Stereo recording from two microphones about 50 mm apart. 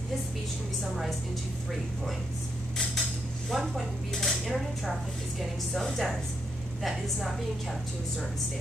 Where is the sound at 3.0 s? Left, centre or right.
Centre.